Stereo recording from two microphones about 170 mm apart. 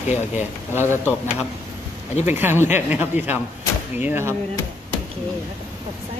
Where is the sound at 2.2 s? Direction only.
10° right (ahead or behind).